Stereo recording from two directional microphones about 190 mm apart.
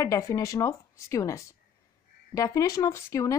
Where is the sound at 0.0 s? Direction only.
15° left (ahead or behind).